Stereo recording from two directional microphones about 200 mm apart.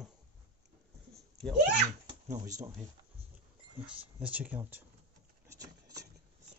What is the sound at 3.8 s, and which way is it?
Speech, 5° right (ahead or behind).